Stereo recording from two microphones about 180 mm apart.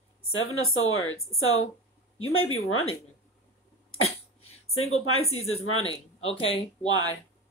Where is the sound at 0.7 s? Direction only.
90° left.